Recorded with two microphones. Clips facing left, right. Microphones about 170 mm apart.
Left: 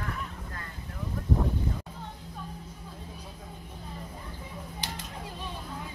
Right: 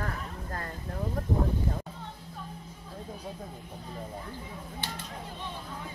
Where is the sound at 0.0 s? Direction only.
45° right (ahead or behind).